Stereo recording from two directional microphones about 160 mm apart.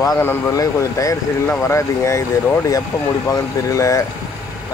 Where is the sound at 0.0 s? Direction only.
25° left (ahead or behind).